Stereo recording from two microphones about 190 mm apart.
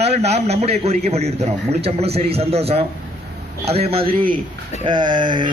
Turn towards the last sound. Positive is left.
turn(degrees=-25)  # may be behind; listen again after turning